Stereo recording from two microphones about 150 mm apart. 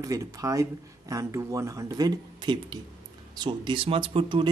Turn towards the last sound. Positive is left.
turn(degrees=-35)  # may be behind; listen again after turning